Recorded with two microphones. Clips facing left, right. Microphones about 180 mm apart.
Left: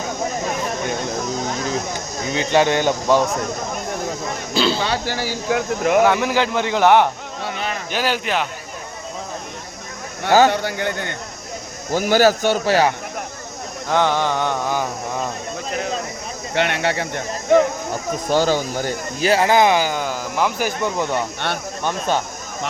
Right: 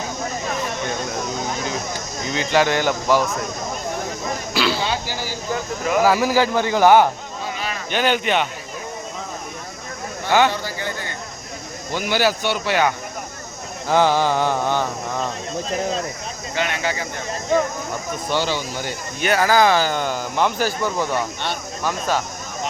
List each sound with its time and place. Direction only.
2.3 s speech: 20° left (ahead or behind)
4.5 s speech: 25° left (ahead or behind)
4.9 s speech: 70° left (ahead or behind)
6.0 s speech: 5° right (ahead or behind)
10.5 s a man's voice: 60° left (ahead or behind)
11.9 s speech: 45° left (ahead or behind)
13.8 s speech: 5° right (ahead or behind)
16.6 s a man's voice: 65° left (ahead or behind)
18.3 s speech: 45° left (ahead or behind)
19.2 s speech: 25° left (ahead or behind); by 20.7 s 5° left (ahead or behind)
20.7 s speech: 25° left (ahead or behind)